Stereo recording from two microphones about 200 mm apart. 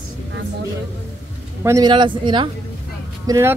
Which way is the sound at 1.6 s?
20° right (ahead or behind).